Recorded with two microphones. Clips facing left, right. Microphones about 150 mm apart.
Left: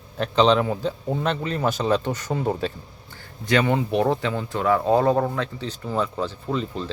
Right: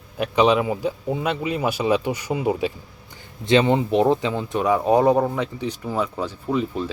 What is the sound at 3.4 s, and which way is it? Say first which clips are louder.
Speech: right 3 dB; 20° right (ahead or behind).